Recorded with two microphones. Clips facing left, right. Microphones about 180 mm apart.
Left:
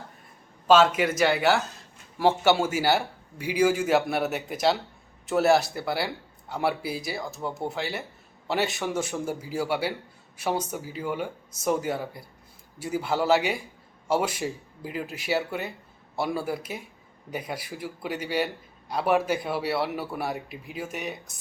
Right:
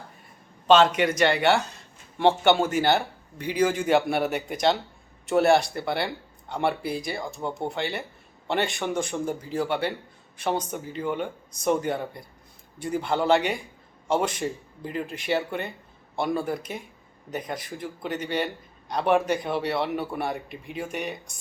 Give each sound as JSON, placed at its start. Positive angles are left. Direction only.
{"t": 0.7, "sound": "speech", "side_deg": 5}